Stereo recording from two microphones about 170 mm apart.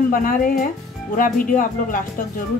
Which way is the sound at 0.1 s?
55° left (ahead or behind).